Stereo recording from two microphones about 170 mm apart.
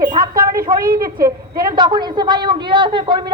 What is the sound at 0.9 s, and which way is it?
Speech, 60° right (ahead or behind).